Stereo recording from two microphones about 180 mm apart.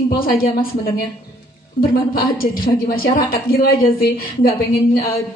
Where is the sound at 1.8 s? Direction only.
50° left (ahead or behind).